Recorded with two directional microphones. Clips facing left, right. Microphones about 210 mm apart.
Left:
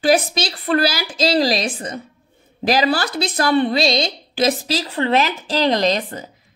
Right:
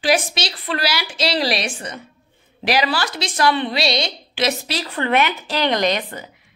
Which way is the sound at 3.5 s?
40° left (ahead or behind).